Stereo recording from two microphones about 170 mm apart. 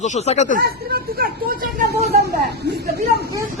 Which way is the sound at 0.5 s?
65° right (ahead or behind).